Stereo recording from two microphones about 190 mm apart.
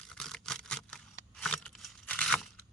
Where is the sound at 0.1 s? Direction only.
5° left (ahead or behind).